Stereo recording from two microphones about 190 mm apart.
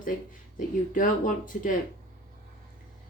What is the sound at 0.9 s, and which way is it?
Speech, 45° left (ahead or behind).